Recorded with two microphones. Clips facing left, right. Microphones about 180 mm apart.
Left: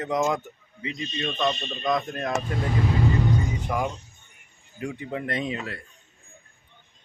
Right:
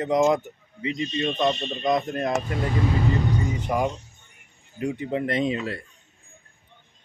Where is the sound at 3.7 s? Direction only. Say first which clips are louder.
Right 5 dB; 20° right (ahead or behind).